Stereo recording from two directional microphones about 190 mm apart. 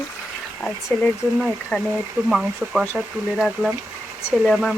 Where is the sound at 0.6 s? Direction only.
5° left (ahead or behind).